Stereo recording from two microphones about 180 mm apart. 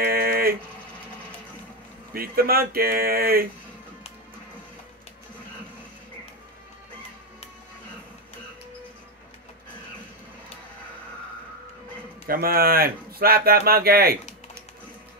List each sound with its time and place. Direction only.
0.0 s a sound: 60° right (ahead or behind)
2.1 s speech: 55° right (ahead or behind)
12.3 s speech: 55° right (ahead or behind)